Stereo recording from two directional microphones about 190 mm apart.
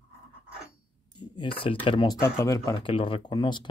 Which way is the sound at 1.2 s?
25° left (ahead or behind).